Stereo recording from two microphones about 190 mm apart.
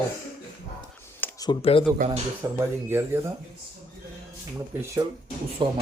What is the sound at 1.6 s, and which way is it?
Speech, 30° left (ahead or behind).